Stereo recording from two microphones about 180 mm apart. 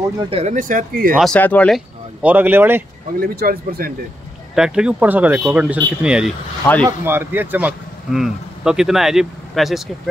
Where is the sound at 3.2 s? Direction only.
55° right (ahead or behind).